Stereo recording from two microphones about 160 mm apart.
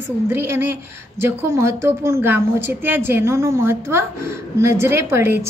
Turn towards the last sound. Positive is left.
turn(degrees=-15)  # may be behind; listen again after turning